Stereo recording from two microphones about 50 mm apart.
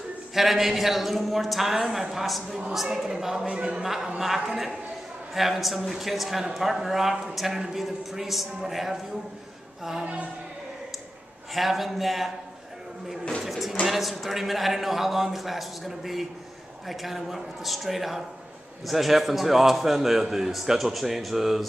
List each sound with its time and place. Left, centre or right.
0.3 s a man's voice: centre; by 3.8 s right
3.8 s a woman's voice: centre
11.5 s a man's voice: centre
13.5 s a man's voice: centre